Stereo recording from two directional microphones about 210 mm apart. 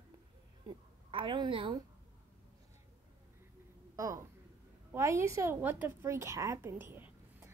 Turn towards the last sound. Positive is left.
turn(degrees=-10)  # may be behind; listen again after turning